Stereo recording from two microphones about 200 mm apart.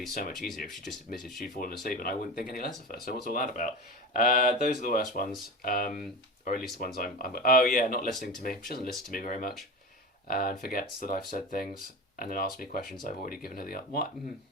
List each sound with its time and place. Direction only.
0.1 s speech: 45° left (ahead or behind)
0.3 s speech: centre (ahead or behind)
1.8 s speech: 45° left (ahead or behind)